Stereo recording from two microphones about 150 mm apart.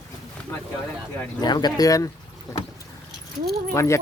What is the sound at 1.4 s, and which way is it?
Speech, 30° left (ahead or behind).